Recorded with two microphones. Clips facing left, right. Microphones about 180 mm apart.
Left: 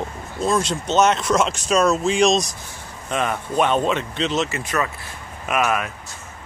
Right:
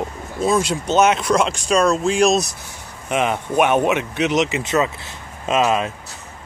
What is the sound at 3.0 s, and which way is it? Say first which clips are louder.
Speech: right 3 dB; 20° right (ahead or behind).